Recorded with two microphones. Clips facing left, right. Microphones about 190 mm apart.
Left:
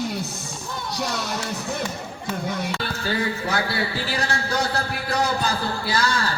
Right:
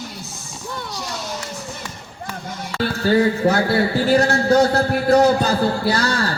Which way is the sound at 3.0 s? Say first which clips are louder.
Right 12 dB; 40° right (ahead or behind).